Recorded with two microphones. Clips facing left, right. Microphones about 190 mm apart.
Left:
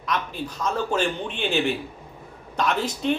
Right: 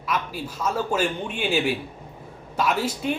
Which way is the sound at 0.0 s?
5° right (ahead or behind).